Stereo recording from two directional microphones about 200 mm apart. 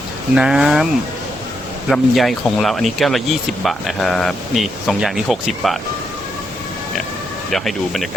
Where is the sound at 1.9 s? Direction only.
Centre (ahead or behind).